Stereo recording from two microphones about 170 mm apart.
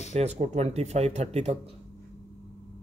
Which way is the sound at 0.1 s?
40° right (ahead or behind).